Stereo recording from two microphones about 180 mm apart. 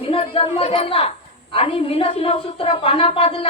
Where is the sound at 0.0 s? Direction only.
30° left (ahead or behind).